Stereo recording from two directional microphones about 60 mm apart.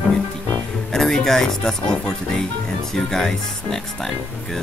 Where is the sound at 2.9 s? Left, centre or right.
Centre.